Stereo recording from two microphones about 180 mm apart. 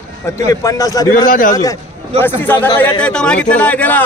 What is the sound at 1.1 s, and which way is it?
Speech, 50° left (ahead or behind).